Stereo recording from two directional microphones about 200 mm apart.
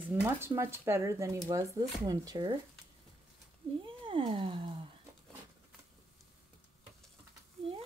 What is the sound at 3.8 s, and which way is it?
Cat, 25° right (ahead or behind).